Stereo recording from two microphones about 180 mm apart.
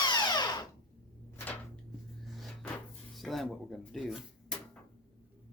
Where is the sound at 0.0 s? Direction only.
25° left (ahead or behind).